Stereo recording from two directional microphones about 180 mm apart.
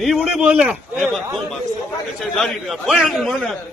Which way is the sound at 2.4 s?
Centre (ahead or behind).